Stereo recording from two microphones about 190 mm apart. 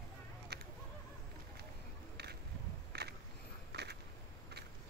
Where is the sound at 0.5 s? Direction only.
60° right (ahead or behind).